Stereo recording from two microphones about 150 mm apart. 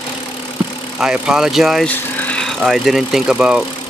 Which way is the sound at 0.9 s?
5° right (ahead or behind).